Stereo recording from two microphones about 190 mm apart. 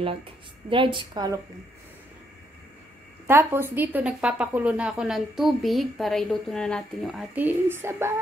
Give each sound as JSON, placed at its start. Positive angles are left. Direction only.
{"t": 0.7, "sound": "a woman's voice", "side_deg": -25}
{"t": 3.3, "sound": "a woman's voice", "side_deg": -10}